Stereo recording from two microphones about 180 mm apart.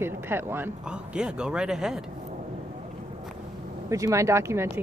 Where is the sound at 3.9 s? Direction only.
15° right (ahead or behind).